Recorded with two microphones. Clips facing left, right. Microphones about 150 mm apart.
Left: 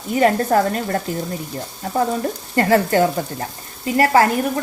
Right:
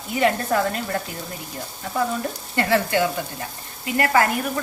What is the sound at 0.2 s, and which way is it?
Speech, 40° left (ahead or behind).